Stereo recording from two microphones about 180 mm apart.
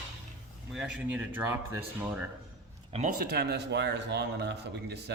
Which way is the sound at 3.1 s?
60° right (ahead or behind).